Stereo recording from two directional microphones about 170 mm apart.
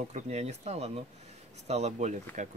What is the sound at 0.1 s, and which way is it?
Speech, 40° right (ahead or behind).